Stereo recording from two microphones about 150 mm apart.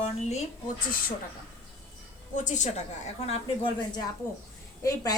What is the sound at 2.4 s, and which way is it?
Speech, 55° left (ahead or behind).